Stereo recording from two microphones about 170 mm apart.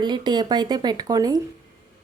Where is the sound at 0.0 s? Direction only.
25° right (ahead or behind).